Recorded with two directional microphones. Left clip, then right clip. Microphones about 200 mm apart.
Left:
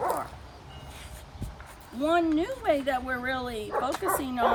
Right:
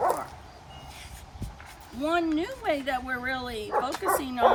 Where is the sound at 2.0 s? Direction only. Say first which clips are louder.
Left 2 dB; 10° left (ahead or behind).